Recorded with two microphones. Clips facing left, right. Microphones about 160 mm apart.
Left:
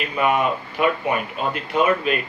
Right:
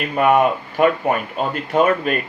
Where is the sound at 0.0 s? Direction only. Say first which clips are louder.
Right 5 dB; 50° right (ahead or behind).